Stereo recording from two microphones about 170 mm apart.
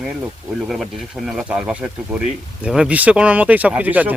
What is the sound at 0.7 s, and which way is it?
Speech, centre (ahead or behind).